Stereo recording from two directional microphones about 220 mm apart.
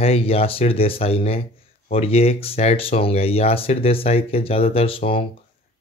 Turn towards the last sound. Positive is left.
turn(degrees=25)  # may be behind; listen again after turning